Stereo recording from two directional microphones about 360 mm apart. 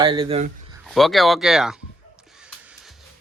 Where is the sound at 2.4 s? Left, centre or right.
Centre.